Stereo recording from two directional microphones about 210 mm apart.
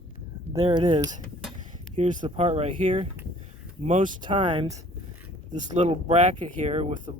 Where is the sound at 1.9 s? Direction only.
35° right (ahead or behind).